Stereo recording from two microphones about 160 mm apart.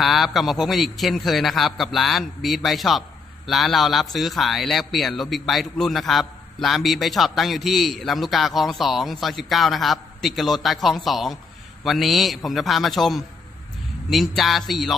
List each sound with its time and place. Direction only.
0.0 s a man's voice: centre (ahead or behind)